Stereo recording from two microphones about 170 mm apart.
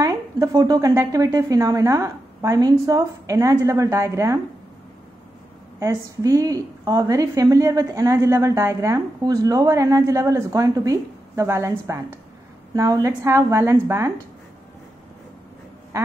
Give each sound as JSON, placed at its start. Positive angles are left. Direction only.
{"t": 0.0, "sound": "a woman's voice", "side_deg": -20}
{"t": 5.8, "sound": "a woman's voice", "side_deg": -20}